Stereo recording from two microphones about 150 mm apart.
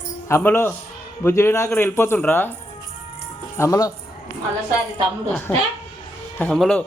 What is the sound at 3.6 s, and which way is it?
Speech, 20° left (ahead or behind).